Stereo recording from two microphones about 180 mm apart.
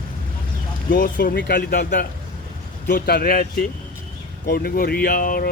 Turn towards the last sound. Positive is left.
turn(degrees=55)  # may be behind; listen again after turning